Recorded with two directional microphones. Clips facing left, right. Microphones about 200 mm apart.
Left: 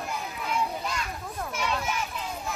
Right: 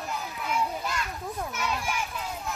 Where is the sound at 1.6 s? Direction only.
10° right (ahead or behind).